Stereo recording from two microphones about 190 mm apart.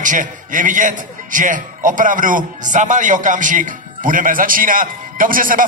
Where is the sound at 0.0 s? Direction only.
45° right (ahead or behind).